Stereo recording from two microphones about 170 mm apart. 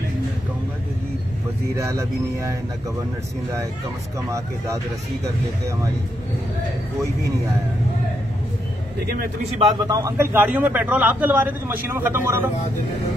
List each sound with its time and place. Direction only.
1.8 s speech: 20° right (ahead or behind)
9.4 s a man's voice: 30° right (ahead or behind)